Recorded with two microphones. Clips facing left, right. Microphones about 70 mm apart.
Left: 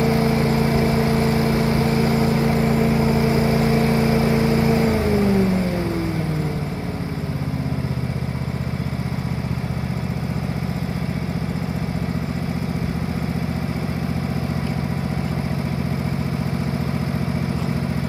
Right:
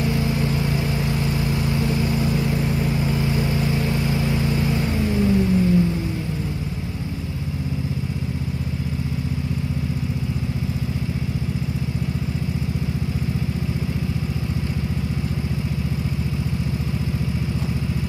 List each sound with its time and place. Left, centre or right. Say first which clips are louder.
0.0 s vehicle: left 4 dB; left